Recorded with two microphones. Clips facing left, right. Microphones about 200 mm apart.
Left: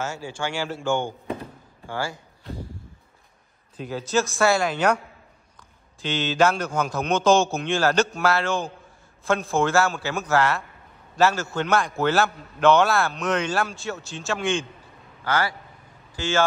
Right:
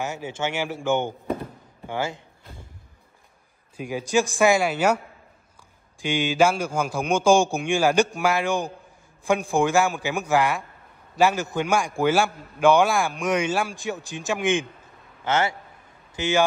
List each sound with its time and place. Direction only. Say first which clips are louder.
0.0 s speech: right 1 dB; 20° right (ahead or behind)
3.7 s a man's voice: right 1 dB; 10° right (ahead or behind)
6.0 s a man's voice: right 1 dB; 10° right (ahead or behind)